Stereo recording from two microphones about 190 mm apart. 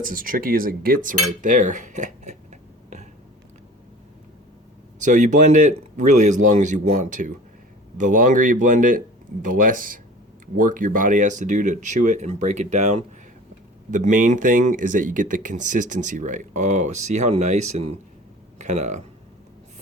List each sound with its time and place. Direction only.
0.0 s cutlery: 45° right (ahead or behind)
4.9 s speech: 40° right (ahead or behind)